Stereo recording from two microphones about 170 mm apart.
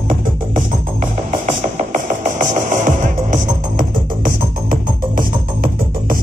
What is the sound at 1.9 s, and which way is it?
Music, 50° right (ahead or behind).